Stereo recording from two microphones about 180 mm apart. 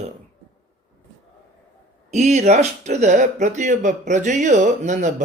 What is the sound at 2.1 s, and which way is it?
Speech, 40° right (ahead or behind).